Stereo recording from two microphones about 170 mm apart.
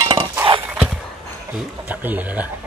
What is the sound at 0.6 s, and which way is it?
Dog, 5° right (ahead or behind).